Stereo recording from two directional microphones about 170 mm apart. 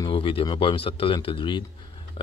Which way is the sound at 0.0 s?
30° left (ahead or behind).